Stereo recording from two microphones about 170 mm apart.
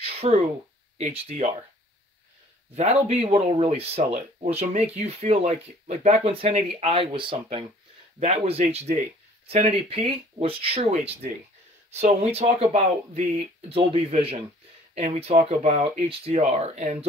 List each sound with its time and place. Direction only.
0.0 s a sound: 35° right (ahead or behind)
0.9 s speech: 35° right (ahead or behind)
2.7 s speech: 40° right (ahead or behind)